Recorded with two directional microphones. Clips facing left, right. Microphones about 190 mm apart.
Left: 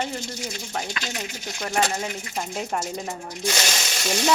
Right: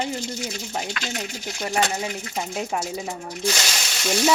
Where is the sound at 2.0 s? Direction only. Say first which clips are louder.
Right 1 dB; 5° right (ahead or behind).